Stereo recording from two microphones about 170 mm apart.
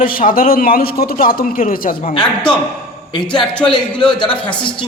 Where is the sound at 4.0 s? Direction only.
5° left (ahead or behind).